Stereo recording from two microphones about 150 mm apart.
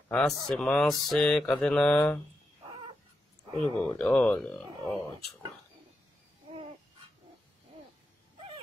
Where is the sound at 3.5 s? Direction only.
30° right (ahead or behind).